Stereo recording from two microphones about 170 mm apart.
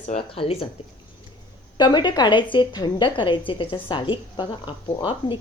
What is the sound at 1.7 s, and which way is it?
A woman's voice, 25° left (ahead or behind).